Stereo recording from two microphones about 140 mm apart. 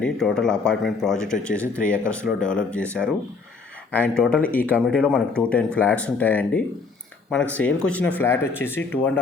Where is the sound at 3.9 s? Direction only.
10° left (ahead or behind).